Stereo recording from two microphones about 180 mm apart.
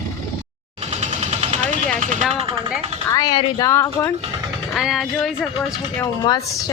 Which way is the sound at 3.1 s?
20° left (ahead or behind).